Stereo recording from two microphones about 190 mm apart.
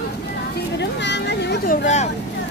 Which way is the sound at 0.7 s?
65° left (ahead or behind).